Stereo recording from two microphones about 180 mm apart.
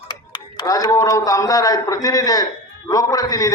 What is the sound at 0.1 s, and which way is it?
A man's voice, 25° left (ahead or behind).